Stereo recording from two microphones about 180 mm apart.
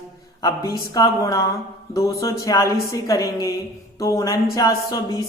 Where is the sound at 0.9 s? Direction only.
20° left (ahead or behind).